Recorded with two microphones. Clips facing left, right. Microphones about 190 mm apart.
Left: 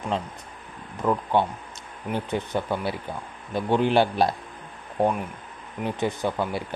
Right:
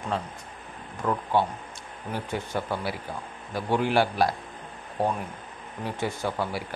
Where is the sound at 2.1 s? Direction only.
20° left (ahead or behind).